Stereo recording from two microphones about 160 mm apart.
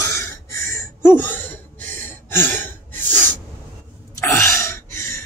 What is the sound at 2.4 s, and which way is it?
Gasp, 15° left (ahead or behind).